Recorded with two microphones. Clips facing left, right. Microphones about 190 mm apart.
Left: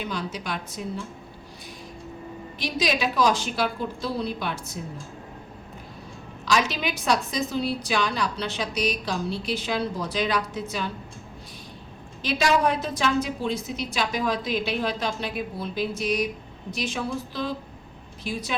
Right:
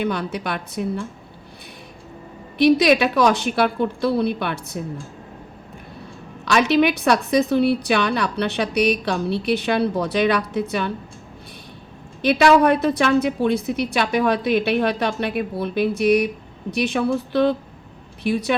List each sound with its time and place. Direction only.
0.0 s a woman's voice: 60° right (ahead or behind)
2.6 s a woman's voice: 65° right (ahead or behind)
6.4 s a woman's voice: 65° right (ahead or behind)
12.2 s a woman's voice: 60° right (ahead or behind)